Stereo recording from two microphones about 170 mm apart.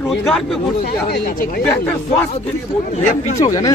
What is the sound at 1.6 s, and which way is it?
Speech, 10° left (ahead or behind).